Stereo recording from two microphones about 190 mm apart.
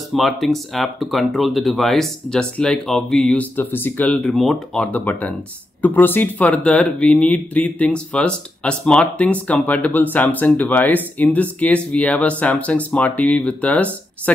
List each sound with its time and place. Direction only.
0.1 s speech: centre (ahead or behind)